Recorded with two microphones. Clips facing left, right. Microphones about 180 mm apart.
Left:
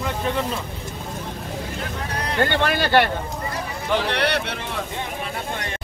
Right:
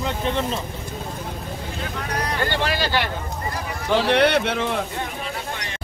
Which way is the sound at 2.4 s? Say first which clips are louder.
Left 5 dB; 55° left (ahead or behind).